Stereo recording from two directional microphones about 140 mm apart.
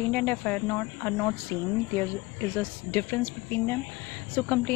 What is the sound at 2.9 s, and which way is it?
Speech, 15° left (ahead or behind).